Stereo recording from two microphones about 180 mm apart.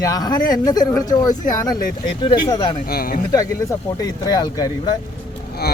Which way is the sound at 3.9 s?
20° left (ahead or behind).